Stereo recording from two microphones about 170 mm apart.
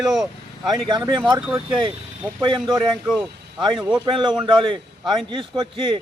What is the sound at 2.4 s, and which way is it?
Speech, 30° right (ahead or behind).